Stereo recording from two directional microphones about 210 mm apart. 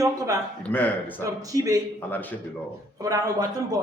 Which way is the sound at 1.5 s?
15° right (ahead or behind).